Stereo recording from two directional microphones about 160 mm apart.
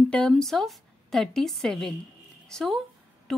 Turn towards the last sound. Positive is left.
turn(degrees=5)  # may be behind; listen again after turning